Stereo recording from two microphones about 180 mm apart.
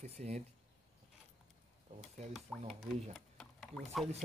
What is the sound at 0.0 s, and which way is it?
Speech, 35° right (ahead or behind).